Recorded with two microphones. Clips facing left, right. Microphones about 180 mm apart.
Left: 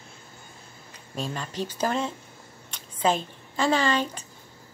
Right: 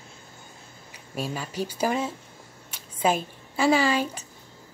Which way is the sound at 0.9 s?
10° right (ahead or behind).